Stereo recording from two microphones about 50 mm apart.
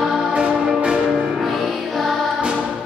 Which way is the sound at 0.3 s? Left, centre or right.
Centre.